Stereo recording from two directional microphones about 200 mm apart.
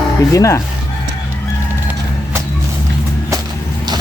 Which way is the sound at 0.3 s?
15° left (ahead or behind).